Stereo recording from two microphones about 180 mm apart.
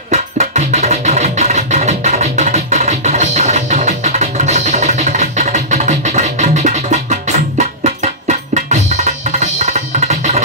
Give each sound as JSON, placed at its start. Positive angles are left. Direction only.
{"t": 0.1, "sound": "music", "side_deg": -40}